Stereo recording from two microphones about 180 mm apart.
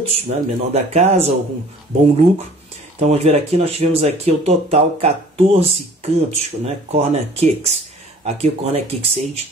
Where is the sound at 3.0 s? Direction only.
35° right (ahead or behind).